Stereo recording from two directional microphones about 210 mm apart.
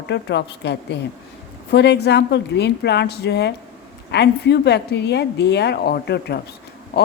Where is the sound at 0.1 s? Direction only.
55° left (ahead or behind).